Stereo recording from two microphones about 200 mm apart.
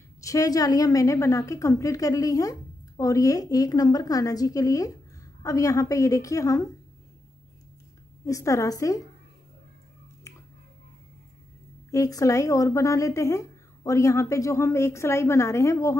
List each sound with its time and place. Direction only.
0.2 s speech: 15° left (ahead or behind)
8.3 s speech: 15° left (ahead or behind)
11.9 s speech: 15° left (ahead or behind)